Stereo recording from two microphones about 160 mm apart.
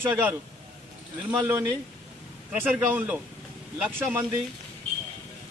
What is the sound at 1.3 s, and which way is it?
A man's voice, 15° right (ahead or behind).